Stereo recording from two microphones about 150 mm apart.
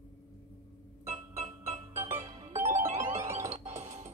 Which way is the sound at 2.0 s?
20° right (ahead or behind).